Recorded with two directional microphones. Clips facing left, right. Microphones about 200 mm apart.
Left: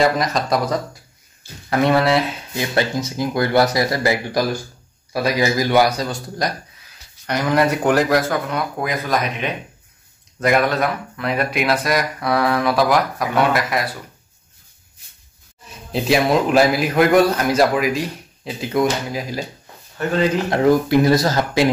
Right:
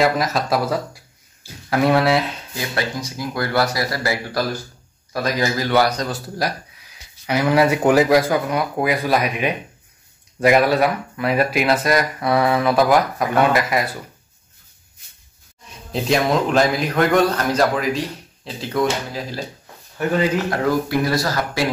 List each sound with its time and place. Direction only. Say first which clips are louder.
0.0 s speech: left 1 dB; 5° right (ahead or behind)
2.5 s a man's voice: left 5 dB; 25° left (ahead or behind)
6.0 s speech: even; 5° right (ahead or behind)
15.9 s a man's voice: left 2 dB; 5° left (ahead or behind)
20.0 s speech: even; 10° right (ahead or behind)
20.4 s speech: left 4 dB; 20° left (ahead or behind)